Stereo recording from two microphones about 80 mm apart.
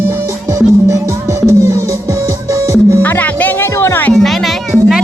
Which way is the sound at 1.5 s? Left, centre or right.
Right.